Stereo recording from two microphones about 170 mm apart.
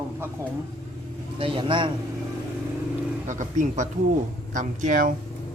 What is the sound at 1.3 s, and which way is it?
Speech, 30° right (ahead or behind).